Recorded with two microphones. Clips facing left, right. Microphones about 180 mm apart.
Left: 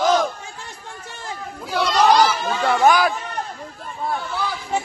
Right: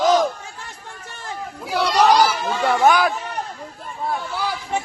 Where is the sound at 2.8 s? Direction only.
5° left (ahead or behind).